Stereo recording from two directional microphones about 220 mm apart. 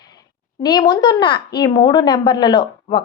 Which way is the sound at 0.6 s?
20° left (ahead or behind).